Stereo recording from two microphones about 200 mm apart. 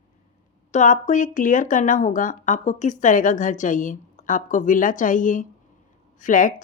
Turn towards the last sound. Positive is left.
turn(degrees=40)  # may be behind; listen again after turning